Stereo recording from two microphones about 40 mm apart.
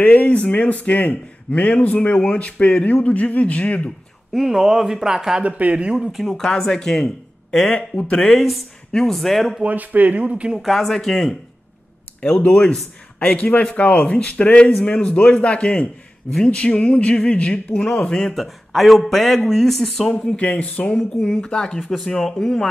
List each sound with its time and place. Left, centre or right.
0.0 s speech: left
4.3 s speech: centre
5.4 s speech: right
6.1 s speech: centre
6.7 s speech: centre
7.7 s speech: left
9.1 s speech: centre
9.7 s speech: right
10.6 s speech: centre
12.2 s speech: left
18.3 s speech: centre
20.5 s speech: left
20.8 s speech: left
21.9 s speech: centre